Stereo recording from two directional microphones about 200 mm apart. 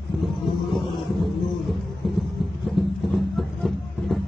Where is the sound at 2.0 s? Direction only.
Centre (ahead or behind).